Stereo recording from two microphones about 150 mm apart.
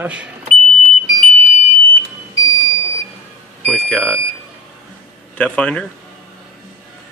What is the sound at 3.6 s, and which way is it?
Speech, 10° left (ahead or behind).